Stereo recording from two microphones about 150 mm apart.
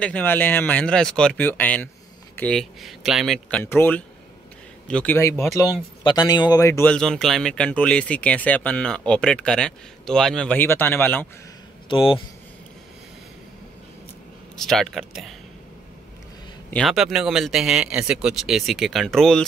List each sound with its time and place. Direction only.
0.0 s speech: 10° left (ahead or behind)
3.4 s speech: 10° left (ahead or behind)
6.9 s speech: 5° left (ahead or behind)
11.9 s speech: 35° left (ahead or behind)
14.6 s speech: 5° left (ahead or behind)
16.7 s speech: centre (ahead or behind)